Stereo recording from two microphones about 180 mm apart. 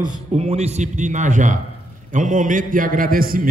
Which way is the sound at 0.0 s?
35° right (ahead or behind).